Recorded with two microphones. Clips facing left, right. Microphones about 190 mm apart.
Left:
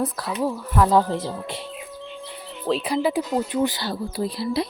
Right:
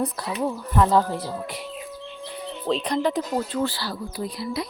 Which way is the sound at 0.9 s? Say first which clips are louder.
Left 2 dB; 20° left (ahead or behind).